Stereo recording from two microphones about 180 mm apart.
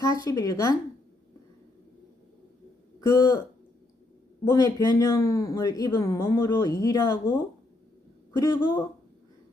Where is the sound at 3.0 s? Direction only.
20° left (ahead or behind).